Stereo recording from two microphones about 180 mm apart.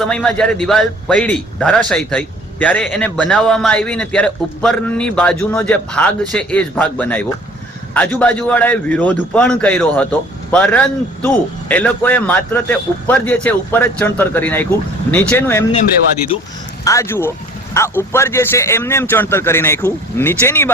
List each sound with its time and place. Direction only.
0.0 s a man's voice: 5° left (ahead or behind)
16.8 s a man's voice: 15° left (ahead or behind)